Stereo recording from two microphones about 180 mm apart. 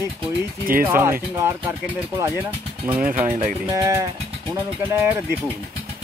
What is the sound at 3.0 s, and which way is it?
Speech, 45° right (ahead or behind).